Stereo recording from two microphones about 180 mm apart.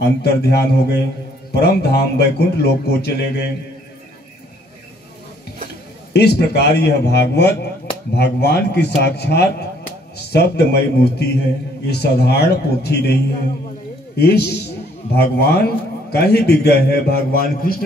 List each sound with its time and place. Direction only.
0.2 s a man's voice: 60° left (ahead or behind)
6.1 s a man's voice: 65° left (ahead or behind)